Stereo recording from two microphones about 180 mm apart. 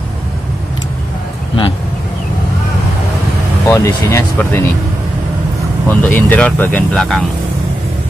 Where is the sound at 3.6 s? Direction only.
15° left (ahead or behind).